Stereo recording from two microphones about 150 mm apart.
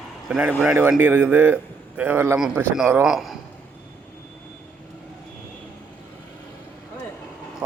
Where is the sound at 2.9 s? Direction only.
5° right (ahead or behind).